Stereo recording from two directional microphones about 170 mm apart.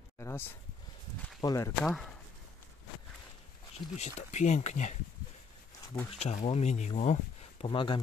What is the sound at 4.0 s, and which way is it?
Speech, 40° left (ahead or behind).